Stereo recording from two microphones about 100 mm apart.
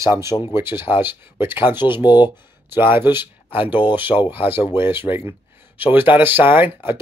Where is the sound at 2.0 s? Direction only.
50° left (ahead or behind).